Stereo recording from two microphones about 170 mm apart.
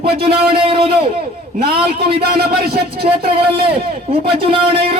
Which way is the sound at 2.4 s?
65° right (ahead or behind).